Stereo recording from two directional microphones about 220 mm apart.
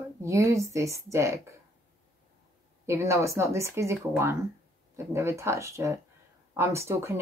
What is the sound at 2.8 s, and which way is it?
Speech, 15° right (ahead or behind).